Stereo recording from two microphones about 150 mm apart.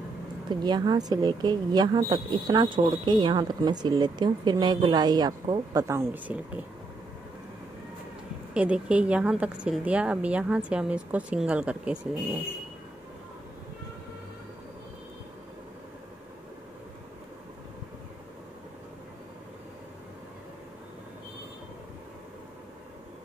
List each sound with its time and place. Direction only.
0.5 s speech: 30° right (ahead or behind); by 6.6 s 10° right (ahead or behind)
8.5 s speech: 5° right (ahead or behind)